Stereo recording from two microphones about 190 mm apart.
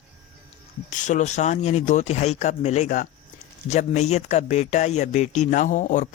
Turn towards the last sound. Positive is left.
turn(degrees=40)  # may be behind; listen again after turning